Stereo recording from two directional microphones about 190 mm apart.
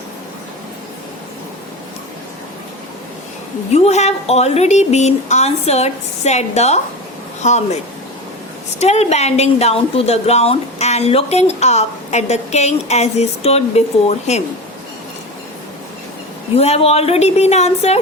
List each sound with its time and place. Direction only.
3.8 s a woman's voice: 35° left (ahead or behind)
8.8 s a woman's voice: 35° left (ahead or behind)
16.6 s a woman's voice: 30° left (ahead or behind)